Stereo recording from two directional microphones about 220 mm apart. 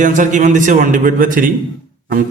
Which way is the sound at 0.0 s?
35° right (ahead or behind).